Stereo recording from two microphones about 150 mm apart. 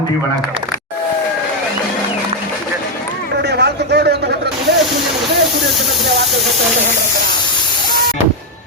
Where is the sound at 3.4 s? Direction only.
90° right.